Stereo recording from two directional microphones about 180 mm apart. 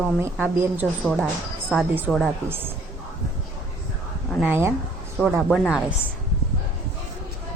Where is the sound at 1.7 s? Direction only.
Centre (ahead or behind).